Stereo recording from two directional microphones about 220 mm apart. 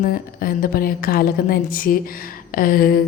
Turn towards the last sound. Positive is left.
turn(degrees=40)  # may be behind; listen again after turning